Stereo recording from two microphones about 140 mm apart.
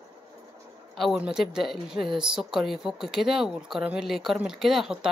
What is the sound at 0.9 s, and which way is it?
Speech, centre (ahead or behind).